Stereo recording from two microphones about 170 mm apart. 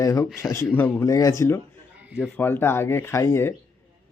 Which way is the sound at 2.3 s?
15° left (ahead or behind).